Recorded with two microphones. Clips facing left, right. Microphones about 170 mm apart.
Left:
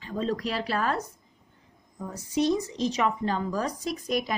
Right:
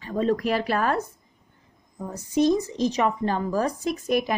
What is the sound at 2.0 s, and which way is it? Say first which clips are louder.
Speech: right 4 dB; 40° right (ahead or behind).